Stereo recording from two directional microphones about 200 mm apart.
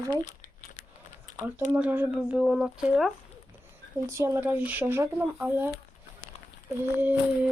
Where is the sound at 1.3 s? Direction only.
15° right (ahead or behind).